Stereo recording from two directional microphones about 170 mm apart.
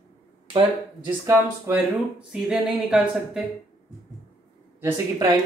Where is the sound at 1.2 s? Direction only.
15° right (ahead or behind).